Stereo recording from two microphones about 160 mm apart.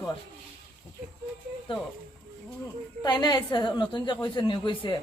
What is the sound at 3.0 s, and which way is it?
A woman's voice, 25° left (ahead or behind).